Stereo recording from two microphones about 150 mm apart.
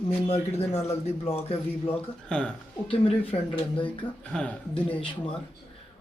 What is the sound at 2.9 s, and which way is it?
Speech, 35° left (ahead or behind).